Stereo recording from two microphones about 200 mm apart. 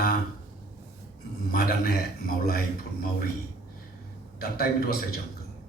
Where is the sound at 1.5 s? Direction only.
50° left (ahead or behind).